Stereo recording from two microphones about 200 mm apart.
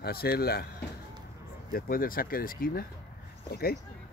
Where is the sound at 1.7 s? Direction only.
45° left (ahead or behind).